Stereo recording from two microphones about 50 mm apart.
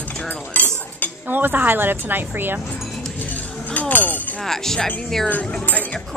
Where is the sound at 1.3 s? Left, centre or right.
Right.